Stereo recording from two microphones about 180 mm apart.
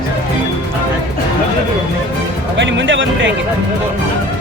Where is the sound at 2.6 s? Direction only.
85° right.